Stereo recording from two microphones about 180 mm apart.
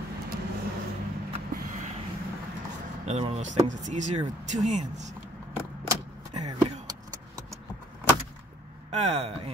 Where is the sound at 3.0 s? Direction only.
35° right (ahead or behind).